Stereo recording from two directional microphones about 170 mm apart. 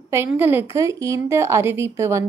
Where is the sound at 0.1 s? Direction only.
15° right (ahead or behind).